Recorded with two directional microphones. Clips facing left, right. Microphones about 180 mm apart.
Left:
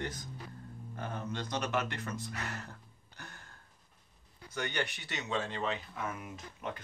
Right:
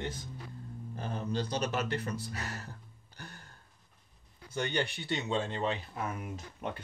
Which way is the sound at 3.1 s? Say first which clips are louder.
Right 2 dB; 35° right (ahead or behind).